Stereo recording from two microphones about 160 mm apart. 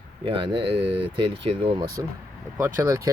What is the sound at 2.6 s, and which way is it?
Speech, 20° right (ahead or behind).